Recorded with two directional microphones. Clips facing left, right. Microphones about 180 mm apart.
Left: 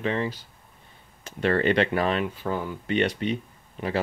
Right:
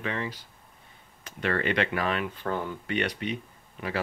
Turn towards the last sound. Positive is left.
turn(degrees=30)  # may be behind; listen again after turning